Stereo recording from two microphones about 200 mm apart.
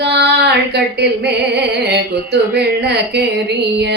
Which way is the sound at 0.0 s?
55° right (ahead or behind).